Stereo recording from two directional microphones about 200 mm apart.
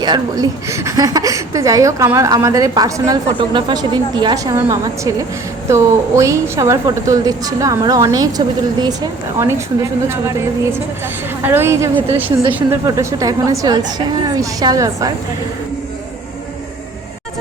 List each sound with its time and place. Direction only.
0.0 s speech: 20° right (ahead or behind)